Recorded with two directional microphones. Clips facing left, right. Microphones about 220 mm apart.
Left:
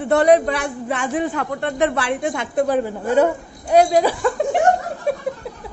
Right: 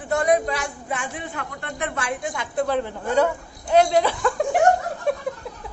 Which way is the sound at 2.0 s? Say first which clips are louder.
Left 6 dB; 65° left (ahead or behind).